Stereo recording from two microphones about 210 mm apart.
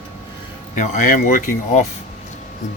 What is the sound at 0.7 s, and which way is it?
Speech, 40° left (ahead or behind).